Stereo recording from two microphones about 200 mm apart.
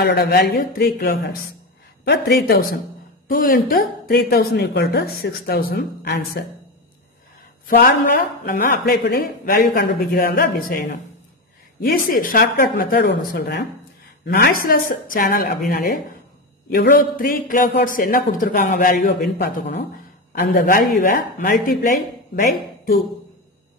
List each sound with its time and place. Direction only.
0.0 s a man's voice: 55° left (ahead or behind)
7.6 s a man's voice: 45° left (ahead or behind)